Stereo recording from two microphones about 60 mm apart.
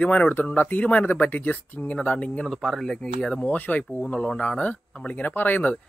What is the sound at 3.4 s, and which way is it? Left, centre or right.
Speech, left.